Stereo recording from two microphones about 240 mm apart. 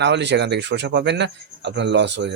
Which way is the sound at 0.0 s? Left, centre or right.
Right.